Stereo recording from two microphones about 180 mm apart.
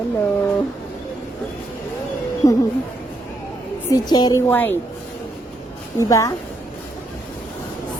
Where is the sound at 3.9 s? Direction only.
20° left (ahead or behind).